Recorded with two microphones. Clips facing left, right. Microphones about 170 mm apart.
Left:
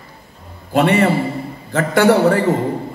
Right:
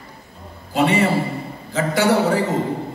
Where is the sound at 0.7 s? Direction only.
55° left (ahead or behind).